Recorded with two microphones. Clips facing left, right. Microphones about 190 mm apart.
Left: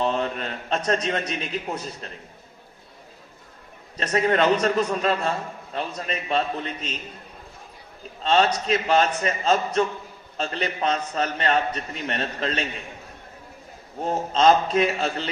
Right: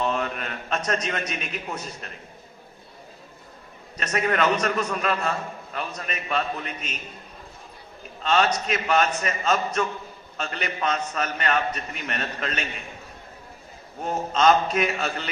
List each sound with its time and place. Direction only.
0.0 s a sound: 30° left (ahead or behind)
0.9 s a man's voice: 30° left (ahead or behind)
3.9 s a man's voice: 30° left (ahead or behind)
8.2 s a man's voice: 30° left (ahead or behind)
14.0 s a man's voice: 30° left (ahead or behind)